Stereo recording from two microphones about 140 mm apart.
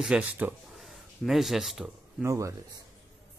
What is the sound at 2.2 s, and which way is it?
Speech, 20° right (ahead or behind).